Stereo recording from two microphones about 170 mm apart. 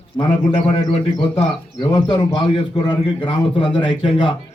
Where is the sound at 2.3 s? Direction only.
30° left (ahead or behind).